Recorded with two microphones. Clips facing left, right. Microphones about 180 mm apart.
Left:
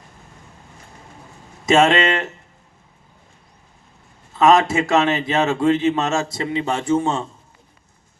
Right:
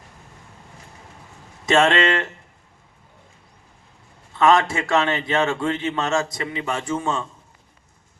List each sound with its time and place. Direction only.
1.7 s a man's voice: 20° left (ahead or behind)
4.4 s a man's voice: 20° left (ahead or behind)